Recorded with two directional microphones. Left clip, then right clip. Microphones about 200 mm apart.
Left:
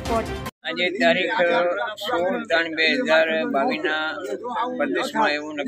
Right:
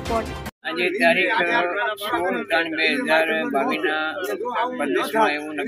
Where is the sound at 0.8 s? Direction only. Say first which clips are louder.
Right 1 dB; 35° left (ahead or behind).